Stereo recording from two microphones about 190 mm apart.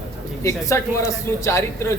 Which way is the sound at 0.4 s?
15° left (ahead or behind).